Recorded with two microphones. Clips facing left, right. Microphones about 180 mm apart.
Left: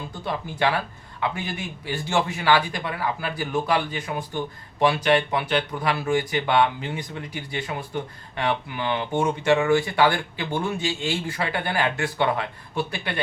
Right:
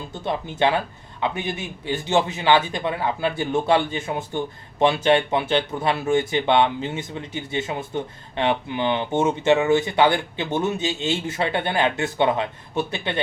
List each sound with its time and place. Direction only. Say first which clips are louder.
0.1 s a man's voice: right 6 dB; 20° right (ahead or behind)